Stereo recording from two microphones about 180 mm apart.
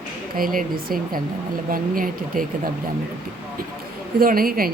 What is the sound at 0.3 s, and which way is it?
Speech, 50° right (ahead or behind).